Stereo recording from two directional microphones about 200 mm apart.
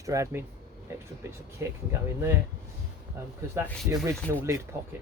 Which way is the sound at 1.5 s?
15° right (ahead or behind).